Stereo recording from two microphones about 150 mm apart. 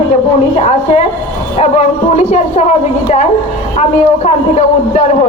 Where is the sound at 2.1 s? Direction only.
50° left (ahead or behind).